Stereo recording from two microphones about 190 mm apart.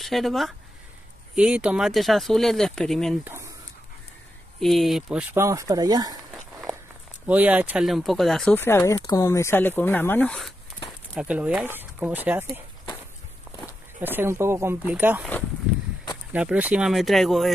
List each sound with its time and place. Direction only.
0.0 s speech: centre (ahead or behind)
3.3 s a sound: 15° right (ahead or behind)
4.6 s speech: centre (ahead or behind)
5.3 s speech: 15° right (ahead or behind)
7.2 s speech: 10° right (ahead or behind)
11.1 s speech: 5° right (ahead or behind)
13.9 s speech: 10° right (ahead or behind)
16.3 s speech: 5° right (ahead or behind)